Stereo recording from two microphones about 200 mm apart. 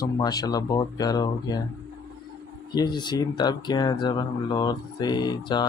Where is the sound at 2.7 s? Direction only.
20° left (ahead or behind).